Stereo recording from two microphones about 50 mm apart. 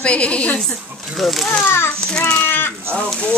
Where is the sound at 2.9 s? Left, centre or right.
Left.